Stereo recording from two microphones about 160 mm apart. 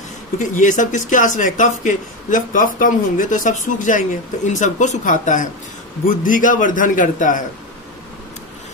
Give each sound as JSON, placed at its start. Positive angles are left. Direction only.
{"t": 0.4, "sound": "a man's voice", "side_deg": 50}